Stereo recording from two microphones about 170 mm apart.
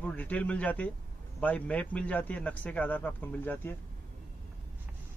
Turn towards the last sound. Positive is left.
turn(degrees=10)  # may be behind; listen again after turning